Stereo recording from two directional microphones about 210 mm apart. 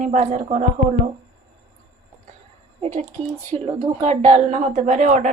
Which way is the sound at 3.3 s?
25° right (ahead or behind).